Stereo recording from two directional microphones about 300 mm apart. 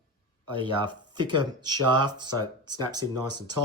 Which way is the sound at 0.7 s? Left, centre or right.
Centre.